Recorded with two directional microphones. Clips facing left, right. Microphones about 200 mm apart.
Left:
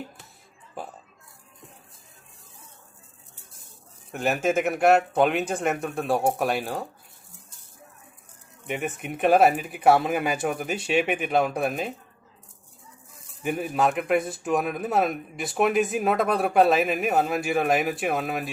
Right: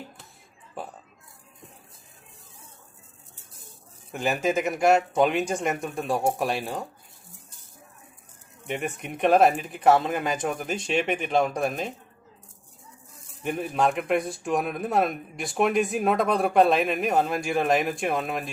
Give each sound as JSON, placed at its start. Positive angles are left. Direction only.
{"t": 0.8, "sound": "burping", "side_deg": 0}
{"t": 4.1, "sound": "speech", "side_deg": 0}
{"t": 8.6, "sound": "speech", "side_deg": 0}
{"t": 13.4, "sound": "speech", "side_deg": 5}